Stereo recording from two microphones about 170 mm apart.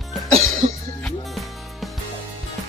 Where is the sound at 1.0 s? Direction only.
Centre (ahead or behind).